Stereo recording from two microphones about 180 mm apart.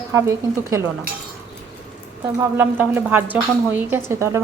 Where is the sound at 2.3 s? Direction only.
10° right (ahead or behind).